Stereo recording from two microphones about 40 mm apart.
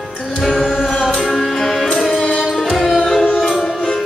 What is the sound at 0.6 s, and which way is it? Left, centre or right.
Music, centre.